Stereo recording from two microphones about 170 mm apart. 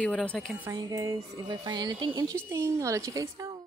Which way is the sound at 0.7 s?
20° right (ahead or behind).